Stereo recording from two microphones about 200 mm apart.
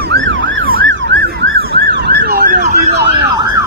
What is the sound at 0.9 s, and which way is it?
Emergency vehicle, 55° right (ahead or behind).